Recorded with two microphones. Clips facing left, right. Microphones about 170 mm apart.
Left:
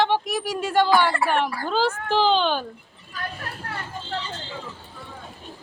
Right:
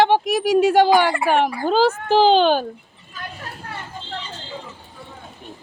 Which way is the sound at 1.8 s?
40° right (ahead or behind).